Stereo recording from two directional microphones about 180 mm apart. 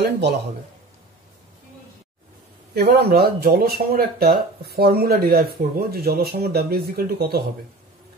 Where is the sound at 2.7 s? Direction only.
60° right (ahead or behind).